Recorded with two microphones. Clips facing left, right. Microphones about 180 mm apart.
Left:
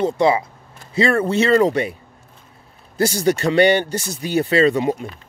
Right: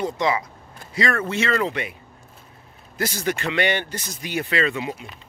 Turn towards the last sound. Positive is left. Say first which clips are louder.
# left 8 dB
turn(degrees=40)  # may be behind; listen again after turning